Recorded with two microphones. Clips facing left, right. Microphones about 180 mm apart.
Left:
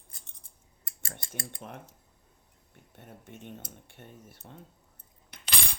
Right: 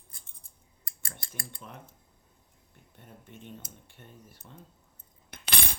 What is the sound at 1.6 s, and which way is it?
Speech, 55° left (ahead or behind).